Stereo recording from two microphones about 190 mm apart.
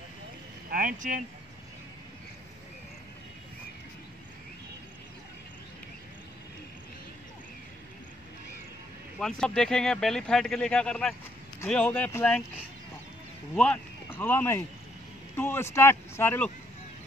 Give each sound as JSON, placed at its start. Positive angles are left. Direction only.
{"t": 0.7, "sound": "speech", "side_deg": -45}
{"t": 9.2, "sound": "speech", "side_deg": 5}
{"t": 13.6, "sound": "speech", "side_deg": 10}